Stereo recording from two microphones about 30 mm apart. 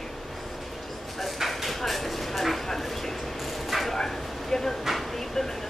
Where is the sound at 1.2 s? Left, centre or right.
Centre.